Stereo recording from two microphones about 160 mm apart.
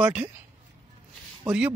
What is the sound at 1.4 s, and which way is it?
Speech, 5° right (ahead or behind).